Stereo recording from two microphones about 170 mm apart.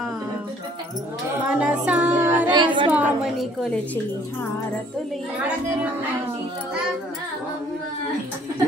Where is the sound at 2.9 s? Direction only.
10° right (ahead or behind).